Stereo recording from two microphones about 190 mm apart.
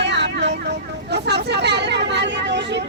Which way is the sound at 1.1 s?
60° right (ahead or behind).